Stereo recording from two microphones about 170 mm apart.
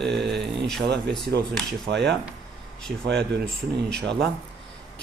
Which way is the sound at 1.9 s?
90° right.